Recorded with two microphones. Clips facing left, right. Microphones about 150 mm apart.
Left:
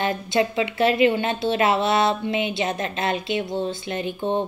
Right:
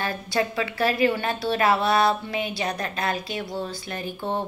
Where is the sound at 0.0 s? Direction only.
20° left (ahead or behind).